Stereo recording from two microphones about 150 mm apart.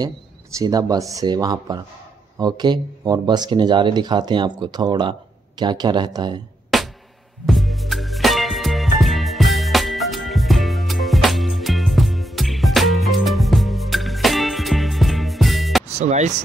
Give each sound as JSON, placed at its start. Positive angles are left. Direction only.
{"t": 0.6, "sound": "speech", "side_deg": -25}
{"t": 6.7, "sound": "music", "side_deg": 0}
{"t": 16.0, "sound": "speech", "side_deg": -50}